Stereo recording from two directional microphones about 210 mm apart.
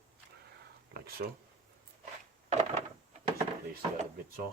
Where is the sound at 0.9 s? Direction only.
45° right (ahead or behind).